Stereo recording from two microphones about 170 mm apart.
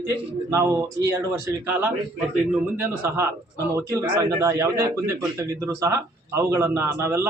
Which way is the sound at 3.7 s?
20° right (ahead or behind).